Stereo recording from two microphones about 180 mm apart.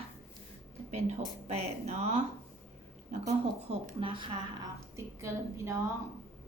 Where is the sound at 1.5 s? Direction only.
35° right (ahead or behind).